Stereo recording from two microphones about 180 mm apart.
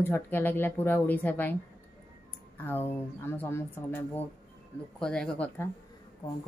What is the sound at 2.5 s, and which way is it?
Speech, 10° left (ahead or behind).